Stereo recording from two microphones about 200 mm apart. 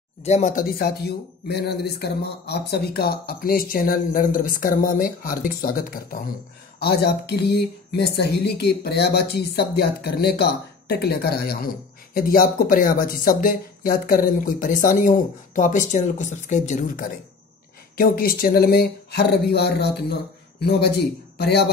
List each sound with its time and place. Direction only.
0.2 s speech: 35° left (ahead or behind); by 20.2 s 55° left (ahead or behind)
21.4 s speech: 55° left (ahead or behind)